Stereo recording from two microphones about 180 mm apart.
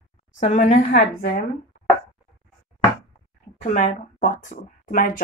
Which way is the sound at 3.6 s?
40° left (ahead or behind).